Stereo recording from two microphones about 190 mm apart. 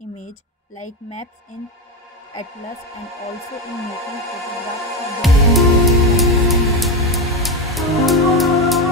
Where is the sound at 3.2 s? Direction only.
15° left (ahead or behind).